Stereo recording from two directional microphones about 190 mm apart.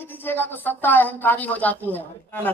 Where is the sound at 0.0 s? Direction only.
10° left (ahead or behind).